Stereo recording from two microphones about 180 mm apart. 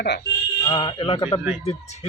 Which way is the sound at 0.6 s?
25° left (ahead or behind).